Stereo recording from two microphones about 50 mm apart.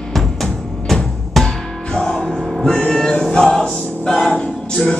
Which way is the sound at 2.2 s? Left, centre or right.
Centre.